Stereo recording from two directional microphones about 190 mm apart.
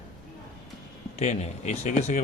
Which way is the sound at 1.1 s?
35° left (ahead or behind).